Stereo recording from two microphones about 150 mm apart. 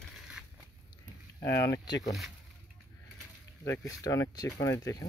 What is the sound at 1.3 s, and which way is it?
Speech, 20° left (ahead or behind).